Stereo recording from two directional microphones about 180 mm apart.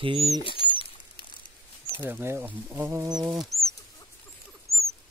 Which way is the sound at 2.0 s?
10° right (ahead or behind).